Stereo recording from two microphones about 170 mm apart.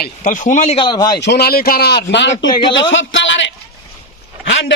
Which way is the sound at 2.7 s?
90° left.